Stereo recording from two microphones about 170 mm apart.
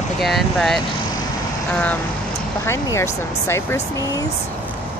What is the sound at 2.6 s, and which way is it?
Speech, 15° left (ahead or behind).